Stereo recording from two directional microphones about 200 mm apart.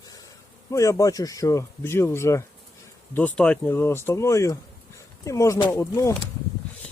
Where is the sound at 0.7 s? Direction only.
15° left (ahead or behind).